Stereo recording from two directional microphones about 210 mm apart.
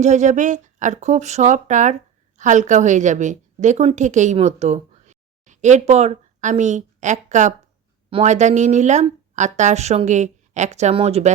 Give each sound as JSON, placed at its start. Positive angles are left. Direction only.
{"t": 0.0, "sound": "a woman's voice", "side_deg": -35}